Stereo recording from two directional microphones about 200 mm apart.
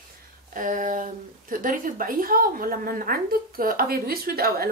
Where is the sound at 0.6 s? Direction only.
40° right (ahead or behind).